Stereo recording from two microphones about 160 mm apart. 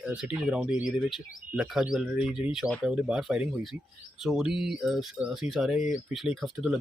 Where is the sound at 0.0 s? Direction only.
5° right (ahead or behind).